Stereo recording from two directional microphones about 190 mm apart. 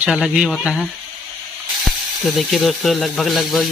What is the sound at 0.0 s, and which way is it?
Speech, 5° right (ahead or behind).